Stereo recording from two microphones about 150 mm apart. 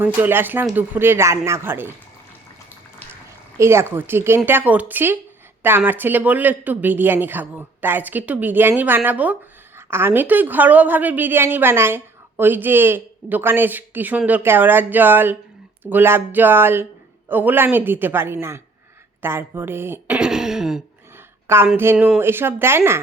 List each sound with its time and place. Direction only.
0.0 s speech: 15° right (ahead or behind)
3.6 s speech: 15° right (ahead or behind)
21.4 s a woman's voice: 15° right (ahead or behind)